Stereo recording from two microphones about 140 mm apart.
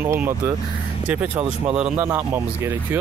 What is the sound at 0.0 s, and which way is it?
Speech, 15° right (ahead or behind).